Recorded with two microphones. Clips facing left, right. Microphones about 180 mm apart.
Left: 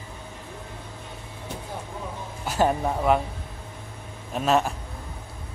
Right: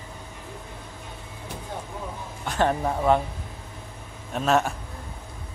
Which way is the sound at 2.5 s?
5° left (ahead or behind).